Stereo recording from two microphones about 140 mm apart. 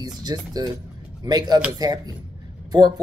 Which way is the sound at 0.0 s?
30° right (ahead or behind).